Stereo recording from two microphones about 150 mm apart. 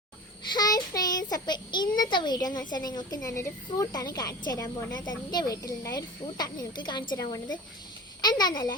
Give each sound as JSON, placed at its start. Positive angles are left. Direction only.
{"t": 0.4, "sound": "a child's voice", "side_deg": 25}